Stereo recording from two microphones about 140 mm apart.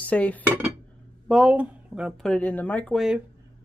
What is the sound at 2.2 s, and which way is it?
Speech, 10° left (ahead or behind).